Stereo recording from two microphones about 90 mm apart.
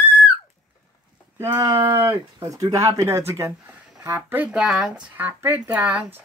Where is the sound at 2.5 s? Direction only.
40° right (ahead or behind); by 4.5 s 20° right (ahead or behind).